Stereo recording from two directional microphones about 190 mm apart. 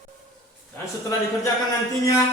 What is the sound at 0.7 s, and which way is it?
Speech, 15° left (ahead or behind).